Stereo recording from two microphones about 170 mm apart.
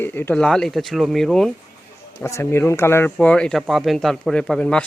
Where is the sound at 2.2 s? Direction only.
15° left (ahead or behind).